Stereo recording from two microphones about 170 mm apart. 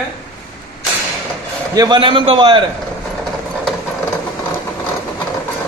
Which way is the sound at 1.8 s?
25° right (ahead or behind).